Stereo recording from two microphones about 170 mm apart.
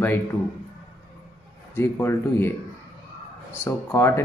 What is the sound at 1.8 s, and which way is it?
Speech, 15° left (ahead or behind).